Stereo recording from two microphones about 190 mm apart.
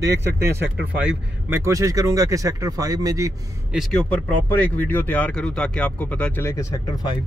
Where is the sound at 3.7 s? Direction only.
Centre (ahead or behind).